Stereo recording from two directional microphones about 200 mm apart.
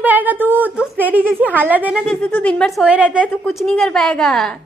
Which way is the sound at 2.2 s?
5° left (ahead or behind).